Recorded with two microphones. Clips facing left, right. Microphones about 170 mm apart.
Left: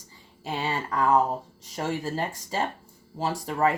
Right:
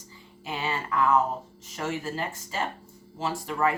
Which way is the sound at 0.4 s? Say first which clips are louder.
Left 2 dB; 35° left (ahead or behind).